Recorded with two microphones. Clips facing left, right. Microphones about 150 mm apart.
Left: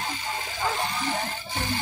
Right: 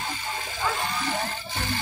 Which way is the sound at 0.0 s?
15° left (ahead or behind).